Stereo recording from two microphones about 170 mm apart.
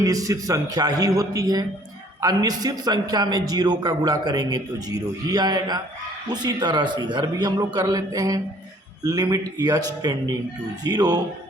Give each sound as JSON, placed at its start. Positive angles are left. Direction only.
{"t": 0.0, "sound": "a man's voice", "side_deg": -20}